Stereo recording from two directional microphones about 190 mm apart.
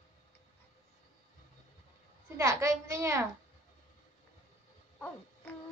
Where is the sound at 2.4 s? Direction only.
15° right (ahead or behind).